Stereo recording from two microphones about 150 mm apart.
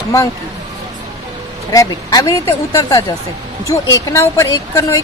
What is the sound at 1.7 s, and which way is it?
Speech, 25° left (ahead or behind).